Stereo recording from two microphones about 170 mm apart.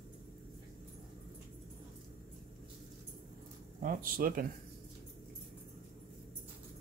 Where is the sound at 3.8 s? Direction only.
55° right (ahead or behind).